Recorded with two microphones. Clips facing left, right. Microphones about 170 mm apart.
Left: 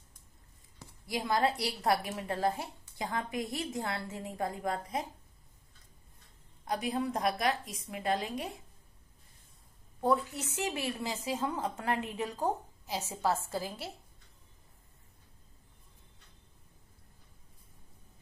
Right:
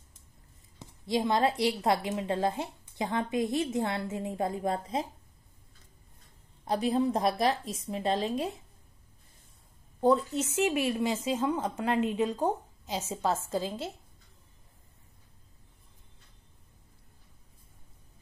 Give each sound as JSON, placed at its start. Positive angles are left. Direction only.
{"t": 0.7, "sound": "a sound", "side_deg": -20}
{"t": 1.6, "sound": "a woman's voice", "side_deg": -20}
{"t": 6.6, "sound": "a woman's voice", "side_deg": -30}
{"t": 9.9, "sound": "a woman's voice", "side_deg": -25}